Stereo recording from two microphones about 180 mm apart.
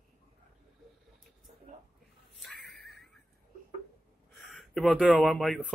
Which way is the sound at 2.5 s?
65° right (ahead or behind).